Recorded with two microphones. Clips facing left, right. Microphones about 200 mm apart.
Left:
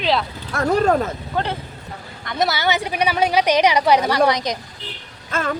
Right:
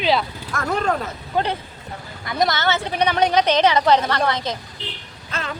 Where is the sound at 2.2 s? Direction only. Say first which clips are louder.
Even; centre (ahead or behind).